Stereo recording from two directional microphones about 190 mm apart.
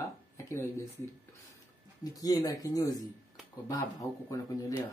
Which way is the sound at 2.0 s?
20° left (ahead or behind).